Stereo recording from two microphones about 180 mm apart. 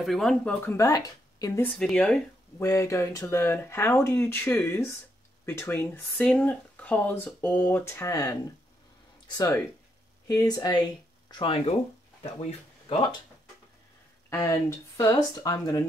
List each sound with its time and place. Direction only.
0.0 s speech: centre (ahead or behind); by 1.7 s 20° left (ahead or behind)
1.8 s speech: 5° left (ahead or behind)
2.6 s speech: 15° left (ahead or behind); by 13.1 s 30° left (ahead or behind)
14.3 s speech: 15° left (ahead or behind)